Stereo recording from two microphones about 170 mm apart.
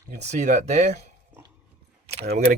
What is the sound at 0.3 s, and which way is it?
Speech, 45° right (ahead or behind).